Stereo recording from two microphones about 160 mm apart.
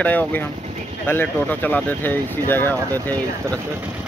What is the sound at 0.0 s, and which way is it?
Speech, 10° left (ahead or behind).